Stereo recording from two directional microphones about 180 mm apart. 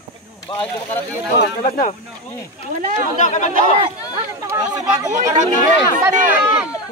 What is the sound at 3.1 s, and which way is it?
Speech, 40° left (ahead or behind).